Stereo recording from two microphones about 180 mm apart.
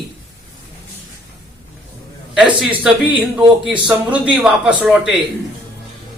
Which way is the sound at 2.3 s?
5° right (ahead or behind).